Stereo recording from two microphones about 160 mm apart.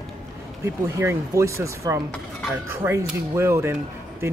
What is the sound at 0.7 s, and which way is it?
Speech, 20° right (ahead or behind).